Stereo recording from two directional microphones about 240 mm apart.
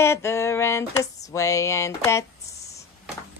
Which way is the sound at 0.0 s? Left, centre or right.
Centre.